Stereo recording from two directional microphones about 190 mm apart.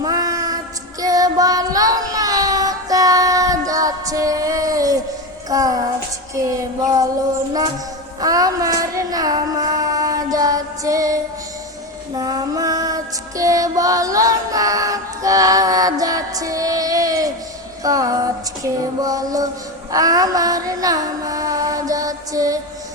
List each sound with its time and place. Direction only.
0.0 s a sound: 20° right (ahead or behind)
1.0 s child singing: 20° right (ahead or behind)
8.2 s a sound: 20° right (ahead or behind)
12.1 s music: 20° right (ahead or behind)
17.8 s female singing: 20° right (ahead or behind)
18.6 s child singing: 20° right (ahead or behind)
19.9 s mantra: 20° right (ahead or behind)